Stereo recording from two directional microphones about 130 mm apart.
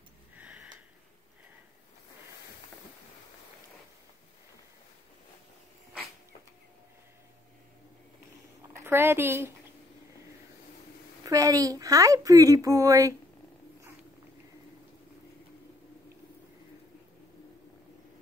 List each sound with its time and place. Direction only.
0.4 s a sound: 10° right (ahead or behind)
8.7 s a woman's voice: 20° right (ahead or behind)
11.2 s a woman's voice: 25° right (ahead or behind)